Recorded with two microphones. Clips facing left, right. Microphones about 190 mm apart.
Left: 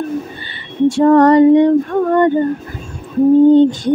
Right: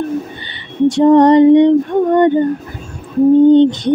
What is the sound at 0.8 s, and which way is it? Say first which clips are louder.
Female singing: right 1 dB; 20° right (ahead or behind).